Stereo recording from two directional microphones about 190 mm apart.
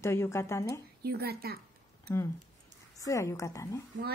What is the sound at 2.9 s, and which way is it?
Speech, 15° left (ahead or behind).